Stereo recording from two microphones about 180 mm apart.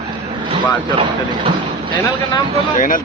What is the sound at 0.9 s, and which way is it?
Speech, 25° right (ahead or behind).